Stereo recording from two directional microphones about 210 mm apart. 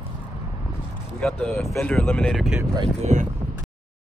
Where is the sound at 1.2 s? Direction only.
5° left (ahead or behind).